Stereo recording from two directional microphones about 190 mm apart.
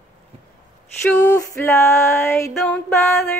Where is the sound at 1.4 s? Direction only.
15° left (ahead or behind).